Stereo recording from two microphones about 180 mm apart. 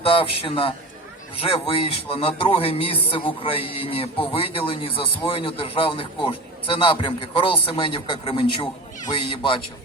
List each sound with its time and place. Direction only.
0.0 s a man's voice: 30° left (ahead or behind)